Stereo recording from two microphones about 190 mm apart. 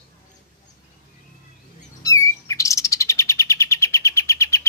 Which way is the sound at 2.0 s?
15° left (ahead or behind).